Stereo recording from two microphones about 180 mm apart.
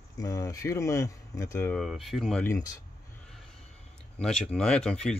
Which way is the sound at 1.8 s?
Centre (ahead or behind).